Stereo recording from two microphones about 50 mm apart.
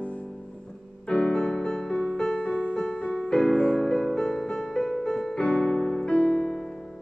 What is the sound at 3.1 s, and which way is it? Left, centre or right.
Music, centre.